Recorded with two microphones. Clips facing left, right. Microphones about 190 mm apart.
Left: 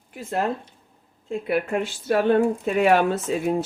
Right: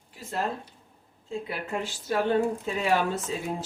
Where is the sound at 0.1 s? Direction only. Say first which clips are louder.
Left 6 dB; 60° left (ahead or behind).